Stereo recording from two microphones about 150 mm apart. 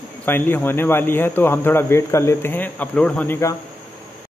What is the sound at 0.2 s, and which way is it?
A man's voice, 10° left (ahead or behind).